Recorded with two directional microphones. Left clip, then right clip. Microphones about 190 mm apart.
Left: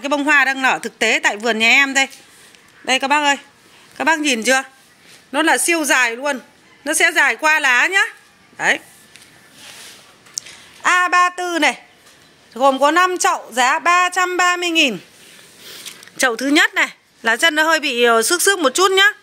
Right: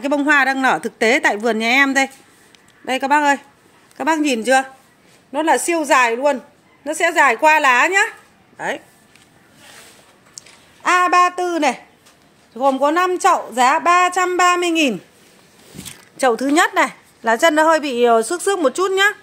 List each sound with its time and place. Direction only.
0.0 s a woman's voice: 15° right (ahead or behind); by 8.8 s centre (ahead or behind)
10.3 s a woman's voice: centre (ahead or behind)
16.2 s a woman's voice: 5° right (ahead or behind)